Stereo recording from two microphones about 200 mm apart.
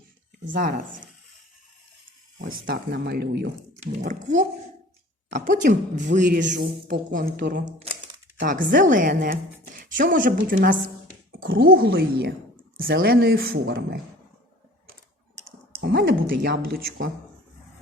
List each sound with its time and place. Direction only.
0.4 s a woman's voice: 40° right (ahead or behind)
2.5 s a woman's voice: 50° right (ahead or behind)
4.0 s a woman's voice: 40° right (ahead or behind)
8.7 s a woman's voice: 40° right (ahead or behind)
15.8 s a woman's voice: 55° right (ahead or behind)